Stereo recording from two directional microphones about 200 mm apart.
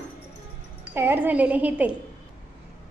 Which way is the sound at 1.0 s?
10° right (ahead or behind).